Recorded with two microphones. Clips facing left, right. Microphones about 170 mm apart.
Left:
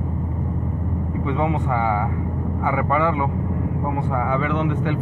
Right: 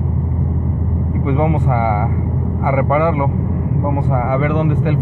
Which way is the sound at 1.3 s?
15° right (ahead or behind).